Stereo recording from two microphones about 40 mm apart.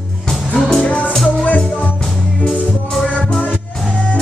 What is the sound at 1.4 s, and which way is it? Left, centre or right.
Music, left.